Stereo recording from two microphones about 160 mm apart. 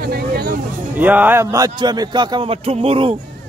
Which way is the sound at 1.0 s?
10° right (ahead or behind).